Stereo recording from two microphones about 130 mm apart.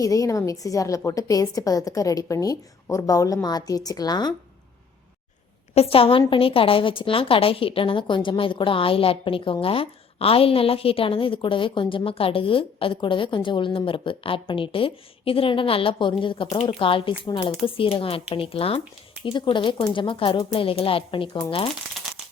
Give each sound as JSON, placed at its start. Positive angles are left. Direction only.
{"t": 0.0, "sound": "a woman's voice", "side_deg": 25}
{"t": 5.7, "sound": "a woman's voice", "side_deg": 50}